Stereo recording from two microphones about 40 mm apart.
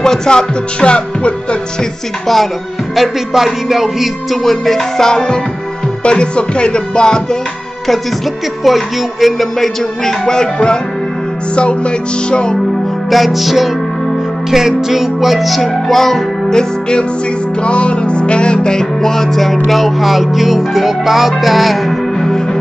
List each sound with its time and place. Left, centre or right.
0.0 s music: centre
3.0 s music: centre; by 7.2 s left
8.6 s music: centre
10.2 s speech: centre
11.5 s music: left
13.1 s music: centre
17.6 s music: left; by 21.9 s centre
22.2 s music: centre